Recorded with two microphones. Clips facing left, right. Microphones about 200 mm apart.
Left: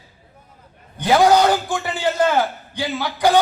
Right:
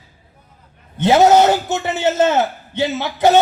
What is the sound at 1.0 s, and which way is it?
A man's voice, 25° right (ahead or behind).